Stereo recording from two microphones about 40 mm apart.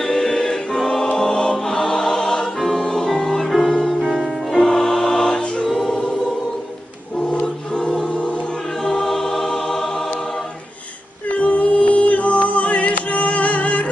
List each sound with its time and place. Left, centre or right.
0.0 s music: centre
1.2 s choir: centre
1.5 s music: centre
5.3 s choir: left
5.6 s music: centre
7.3 s choir: left
7.8 s choir: centre
8.0 s choir: left
8.8 s choir: centre
11.3 s music: left